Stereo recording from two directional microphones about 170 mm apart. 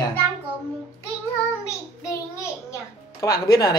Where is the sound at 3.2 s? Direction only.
20° left (ahead or behind).